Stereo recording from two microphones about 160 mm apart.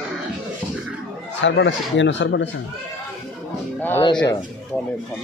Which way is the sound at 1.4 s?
90° left.